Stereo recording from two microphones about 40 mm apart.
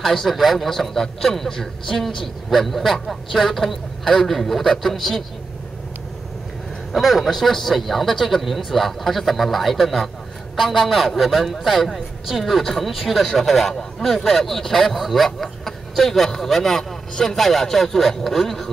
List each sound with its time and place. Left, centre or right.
0.0 s a man's voice: centre
6.9 s a man's voice: centre